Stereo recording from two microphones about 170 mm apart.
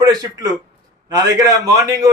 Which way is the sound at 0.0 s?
20° right (ahead or behind).